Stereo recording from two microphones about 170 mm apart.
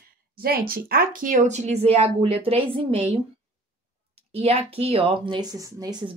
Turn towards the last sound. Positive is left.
turn(degrees=-25)  # may be behind; listen again after turning